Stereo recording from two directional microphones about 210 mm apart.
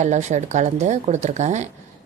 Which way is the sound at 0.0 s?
35° right (ahead or behind).